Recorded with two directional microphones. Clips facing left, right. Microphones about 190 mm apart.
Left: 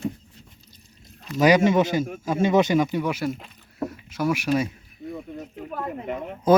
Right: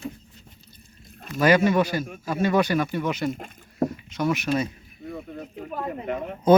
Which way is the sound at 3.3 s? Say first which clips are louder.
Right 6 dB; 50° right (ahead or behind).